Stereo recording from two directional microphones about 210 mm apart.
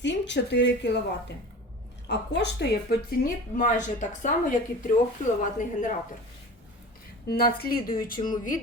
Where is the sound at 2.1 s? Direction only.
55° left (ahead or behind).